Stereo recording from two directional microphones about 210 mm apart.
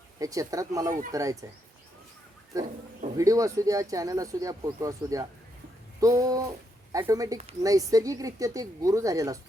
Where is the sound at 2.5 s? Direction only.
15° right (ahead or behind).